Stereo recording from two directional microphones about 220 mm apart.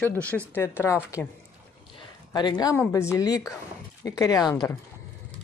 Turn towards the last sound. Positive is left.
turn(degrees=15)  # may be behind; listen again after turning